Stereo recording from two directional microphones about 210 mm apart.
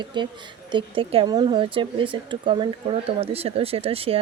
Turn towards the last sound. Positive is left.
turn(degrees=-25)  # may be behind; listen again after turning